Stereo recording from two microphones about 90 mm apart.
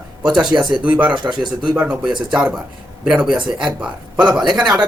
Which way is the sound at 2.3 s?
15° right (ahead or behind).